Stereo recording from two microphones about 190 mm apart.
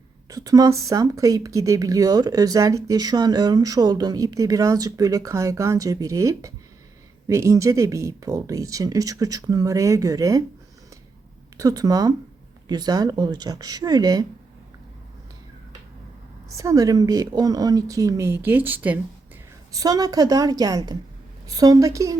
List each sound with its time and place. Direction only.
0.3 s speech: 20° right (ahead or behind)
11.5 s speech: 20° right (ahead or behind)
16.6 s speech: 20° right (ahead or behind)